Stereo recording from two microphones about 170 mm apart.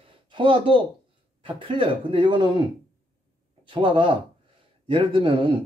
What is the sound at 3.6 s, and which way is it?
Speech, 30° right (ahead or behind).